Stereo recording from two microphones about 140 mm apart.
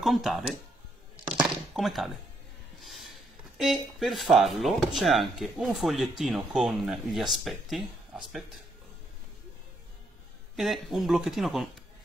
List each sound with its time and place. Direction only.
0.0 s speech: centre (ahead or behind)
1.3 s chopping: 5° right (ahead or behind)
2.8 s a sound: centre (ahead or behind)
3.5 s speech: centre (ahead or behind)
10.5 s speech: centre (ahead or behind)